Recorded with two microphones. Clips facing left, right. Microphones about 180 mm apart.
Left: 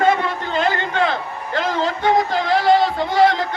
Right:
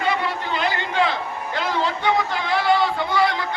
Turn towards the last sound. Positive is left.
turn(degrees=45)  # may be behind; listen again after turning